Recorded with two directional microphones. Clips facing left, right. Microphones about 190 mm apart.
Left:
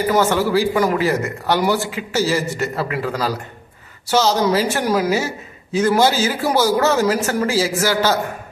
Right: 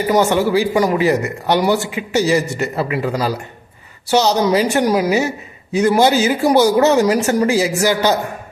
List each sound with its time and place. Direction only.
0.1 s a man's voice: 15° right (ahead or behind)